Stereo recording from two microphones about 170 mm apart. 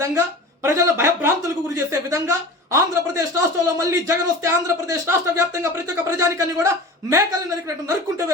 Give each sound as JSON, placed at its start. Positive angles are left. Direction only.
{"t": 0.0, "sound": "speech", "side_deg": -15}